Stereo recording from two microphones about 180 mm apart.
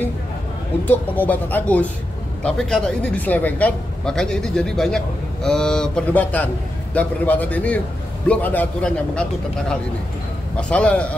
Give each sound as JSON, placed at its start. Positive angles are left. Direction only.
{"t": 0.8, "sound": "speech", "side_deg": 10}
{"t": 10.6, "sound": "speech", "side_deg": 5}